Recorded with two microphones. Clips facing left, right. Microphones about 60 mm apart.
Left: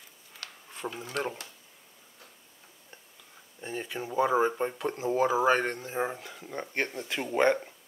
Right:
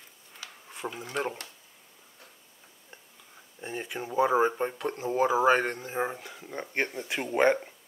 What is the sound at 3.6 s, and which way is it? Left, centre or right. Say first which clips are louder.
Speech: even; centre.